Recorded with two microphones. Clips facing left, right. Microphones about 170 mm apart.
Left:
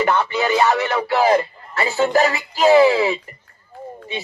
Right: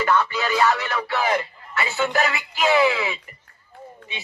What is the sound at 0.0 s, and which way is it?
Speech, 25° left (ahead or behind).